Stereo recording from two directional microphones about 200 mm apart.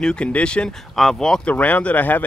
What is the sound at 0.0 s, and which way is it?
Speech, 5° left (ahead or behind).